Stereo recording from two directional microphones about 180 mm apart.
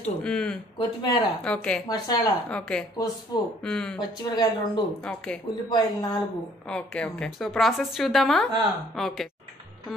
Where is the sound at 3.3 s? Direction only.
20° left (ahead or behind).